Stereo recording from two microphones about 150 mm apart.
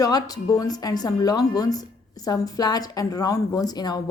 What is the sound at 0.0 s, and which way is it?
A woman's voice, 25° left (ahead or behind).